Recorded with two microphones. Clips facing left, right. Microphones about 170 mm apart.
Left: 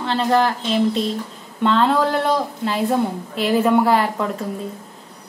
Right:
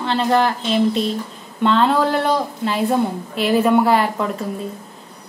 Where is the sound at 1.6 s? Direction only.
Centre (ahead or behind).